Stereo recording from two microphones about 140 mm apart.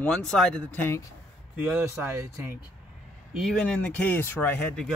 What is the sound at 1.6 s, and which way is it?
Speech, 10° right (ahead or behind).